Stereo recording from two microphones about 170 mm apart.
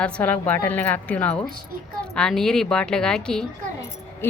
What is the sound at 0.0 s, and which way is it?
A woman's voice, 10° left (ahead or behind).